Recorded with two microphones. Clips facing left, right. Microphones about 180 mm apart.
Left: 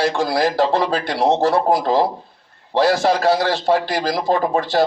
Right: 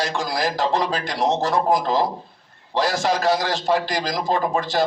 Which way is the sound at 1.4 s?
30° left (ahead or behind).